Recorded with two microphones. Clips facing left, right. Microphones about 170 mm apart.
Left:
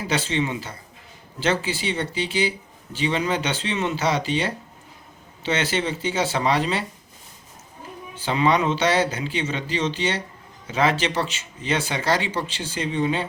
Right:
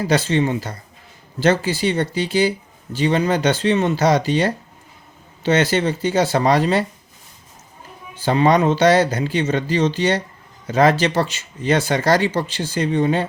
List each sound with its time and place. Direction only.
0.0 s speech: 40° right (ahead or behind)
8.2 s speech: 40° right (ahead or behind)